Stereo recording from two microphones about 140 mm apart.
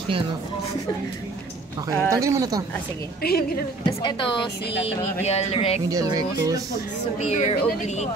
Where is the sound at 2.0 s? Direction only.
20° right (ahead or behind).